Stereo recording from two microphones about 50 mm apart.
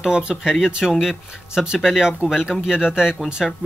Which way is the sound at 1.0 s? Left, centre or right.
Centre.